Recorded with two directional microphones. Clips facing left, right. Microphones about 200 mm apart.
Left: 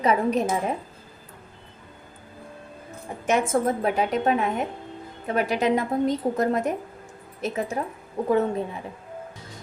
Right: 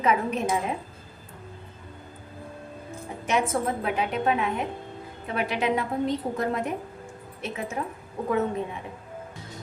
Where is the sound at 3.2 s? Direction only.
50° left (ahead or behind).